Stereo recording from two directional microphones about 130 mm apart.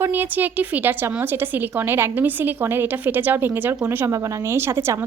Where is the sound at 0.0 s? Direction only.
15° right (ahead or behind).